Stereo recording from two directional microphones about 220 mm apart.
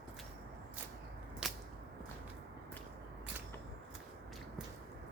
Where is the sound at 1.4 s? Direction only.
5° right (ahead or behind).